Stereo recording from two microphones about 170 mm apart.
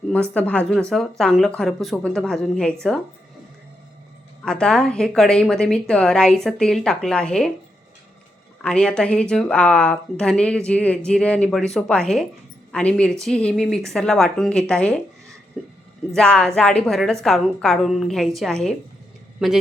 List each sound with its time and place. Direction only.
0.1 s speech: 10° left (ahead or behind)
4.4 s speech: 5° left (ahead or behind)
8.6 s speech: 5° left (ahead or behind)
15.6 s a sound: centre (ahead or behind)
16.1 s speech: 5° left (ahead or behind)